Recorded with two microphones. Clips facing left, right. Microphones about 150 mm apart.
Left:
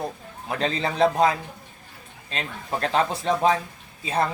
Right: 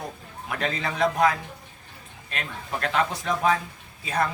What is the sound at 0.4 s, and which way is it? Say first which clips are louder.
Speech: left 3 dB; 30° left (ahead or behind).